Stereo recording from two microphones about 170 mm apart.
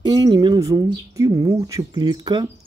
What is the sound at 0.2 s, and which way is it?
Speech, 25° right (ahead or behind).